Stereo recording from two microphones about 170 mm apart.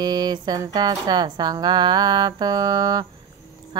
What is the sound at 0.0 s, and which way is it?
Mantra, 25° right (ahead or behind).